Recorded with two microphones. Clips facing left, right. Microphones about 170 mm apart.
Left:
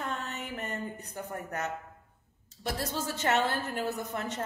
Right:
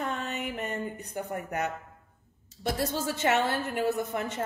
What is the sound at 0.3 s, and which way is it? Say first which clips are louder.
Mantra: right 4 dB; 15° right (ahead or behind).